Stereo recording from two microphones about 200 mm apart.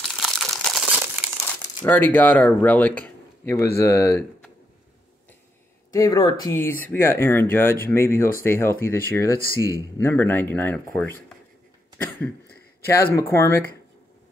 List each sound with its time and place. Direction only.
0.0 s crumpling: centre (ahead or behind)
1.9 s speech: 10° left (ahead or behind)
5.9 s speech: 20° left (ahead or behind)
12.2 s a sound: 10° left (ahead or behind)
13.1 s speech: 15° left (ahead or behind)